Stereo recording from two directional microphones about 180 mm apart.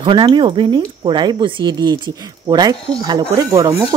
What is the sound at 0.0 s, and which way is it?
Speech, 25° right (ahead or behind).